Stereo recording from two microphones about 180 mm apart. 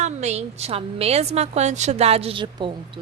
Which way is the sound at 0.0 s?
40° right (ahead or behind).